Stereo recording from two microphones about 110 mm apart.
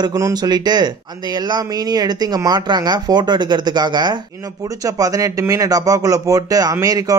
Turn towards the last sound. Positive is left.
turn(degrees=-30)  # may be behind; listen again after turning